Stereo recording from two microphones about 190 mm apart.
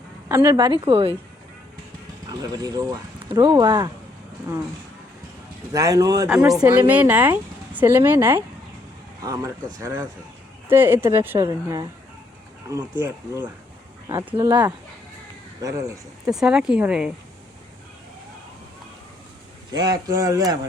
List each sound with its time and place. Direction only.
0.3 s speech: 15° right (ahead or behind)
2.4 s speech: 20° right (ahead or behind)
5.7 s speech: 15° right (ahead or behind)
16.2 s speech: 5° right (ahead or behind)
19.7 s speech: 20° right (ahead or behind)